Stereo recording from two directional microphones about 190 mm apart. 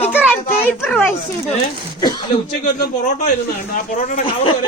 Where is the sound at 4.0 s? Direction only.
30° left (ahead or behind).